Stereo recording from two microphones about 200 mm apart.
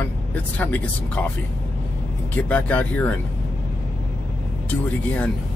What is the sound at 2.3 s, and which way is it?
Speech, 10° left (ahead or behind).